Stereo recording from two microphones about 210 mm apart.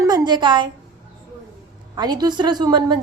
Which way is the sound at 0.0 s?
20° right (ahead or behind).